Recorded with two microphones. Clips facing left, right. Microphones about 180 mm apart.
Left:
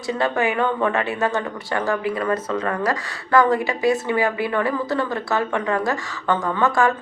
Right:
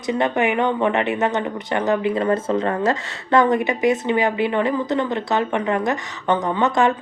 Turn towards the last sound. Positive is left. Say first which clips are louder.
# right 1 dB
turn(degrees=-20)  # may be behind; listen again after turning